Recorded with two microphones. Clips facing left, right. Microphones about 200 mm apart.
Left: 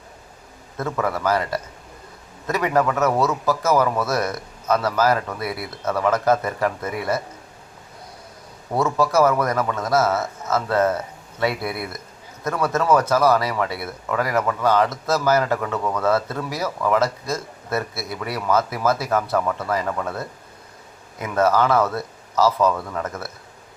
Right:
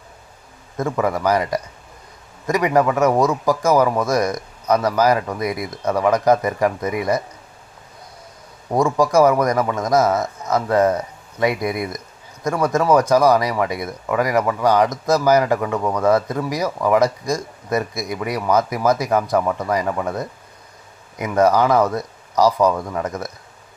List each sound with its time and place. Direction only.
0.8 s speech: 15° right (ahead or behind)
8.7 s speech: 15° right (ahead or behind)